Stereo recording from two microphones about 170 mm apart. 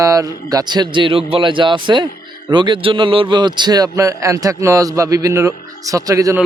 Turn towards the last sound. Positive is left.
turn(degrees=-20)  # may be behind; listen again after turning